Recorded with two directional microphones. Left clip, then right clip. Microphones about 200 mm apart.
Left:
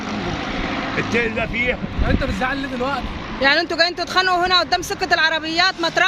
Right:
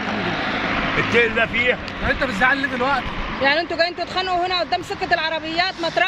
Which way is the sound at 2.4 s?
15° left (ahead or behind).